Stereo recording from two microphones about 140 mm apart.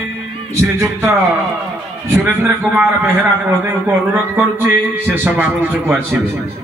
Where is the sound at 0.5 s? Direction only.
20° right (ahead or behind).